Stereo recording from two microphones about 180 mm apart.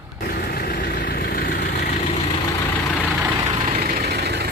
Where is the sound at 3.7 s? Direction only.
55° right (ahead or behind).